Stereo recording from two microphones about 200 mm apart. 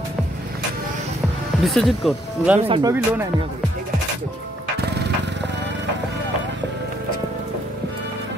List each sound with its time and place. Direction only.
1.6 s speech: centre (ahead or behind)
2.7 s speech: 15° right (ahead or behind)